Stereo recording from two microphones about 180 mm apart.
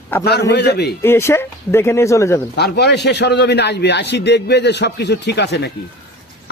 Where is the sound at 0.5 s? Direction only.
65° left (ahead or behind).